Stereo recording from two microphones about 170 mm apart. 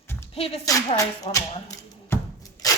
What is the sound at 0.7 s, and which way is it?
Speech, 20° left (ahead or behind).